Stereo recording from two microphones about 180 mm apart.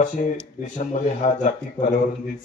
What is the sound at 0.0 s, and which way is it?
Speech, 40° left (ahead or behind).